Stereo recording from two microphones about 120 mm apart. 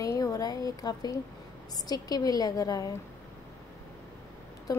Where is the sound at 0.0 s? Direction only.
30° left (ahead or behind).